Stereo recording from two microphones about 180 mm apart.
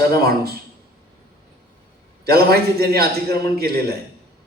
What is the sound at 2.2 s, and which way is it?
Speech, 60° right (ahead or behind).